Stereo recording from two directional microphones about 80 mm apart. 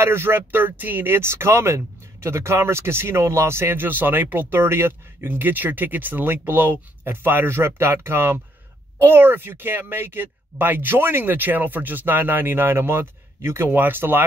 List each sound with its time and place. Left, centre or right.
0.0 s speech: right